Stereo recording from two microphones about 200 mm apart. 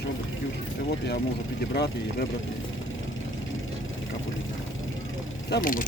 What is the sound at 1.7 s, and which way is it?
Speech, 55° left (ahead or behind).